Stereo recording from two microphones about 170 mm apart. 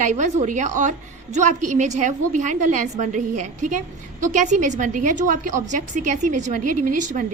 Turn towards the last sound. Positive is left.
turn(degrees=-50)  # may be behind; listen again after turning